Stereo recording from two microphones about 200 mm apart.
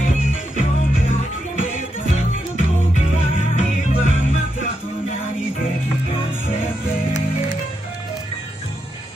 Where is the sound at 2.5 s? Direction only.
40° left (ahead or behind).